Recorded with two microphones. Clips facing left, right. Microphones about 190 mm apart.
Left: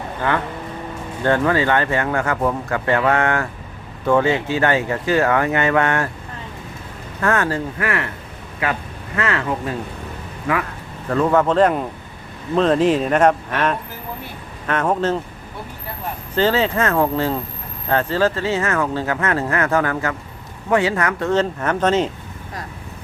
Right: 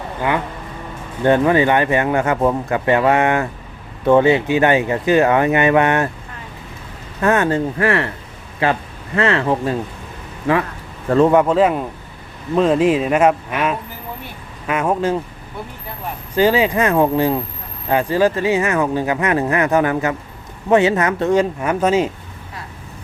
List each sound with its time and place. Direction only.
0.2 s speech: 15° right (ahead or behind)
7.2 s speech: 20° right (ahead or behind)
11.1 s speech: 30° right (ahead or behind)
11.3 s speech: 5° right (ahead or behind)
16.3 s speech: 10° right (ahead or behind)